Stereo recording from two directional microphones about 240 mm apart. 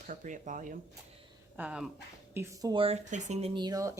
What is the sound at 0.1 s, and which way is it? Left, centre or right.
Speech, right.